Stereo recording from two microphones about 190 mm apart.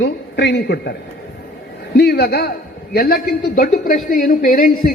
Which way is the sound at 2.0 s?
55° left (ahead or behind).